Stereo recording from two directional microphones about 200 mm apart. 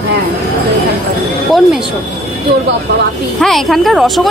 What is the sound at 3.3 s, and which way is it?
Speech, centre (ahead or behind).